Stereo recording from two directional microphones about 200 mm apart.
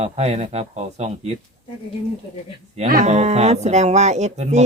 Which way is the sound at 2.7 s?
40° right (ahead or behind).